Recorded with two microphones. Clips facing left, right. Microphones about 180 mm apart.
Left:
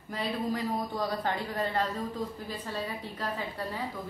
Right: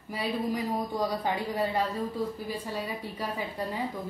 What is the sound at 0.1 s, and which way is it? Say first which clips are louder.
Speech: right 1 dB; 10° right (ahead or behind).